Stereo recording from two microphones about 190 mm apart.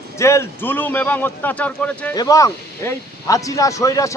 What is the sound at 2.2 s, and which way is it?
Speech, 20° left (ahead or behind).